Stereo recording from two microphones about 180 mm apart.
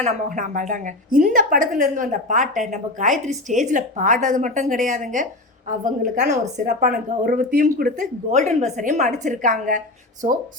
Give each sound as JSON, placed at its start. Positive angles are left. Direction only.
{"t": 0.0, "sound": "a woman's voice", "side_deg": -45}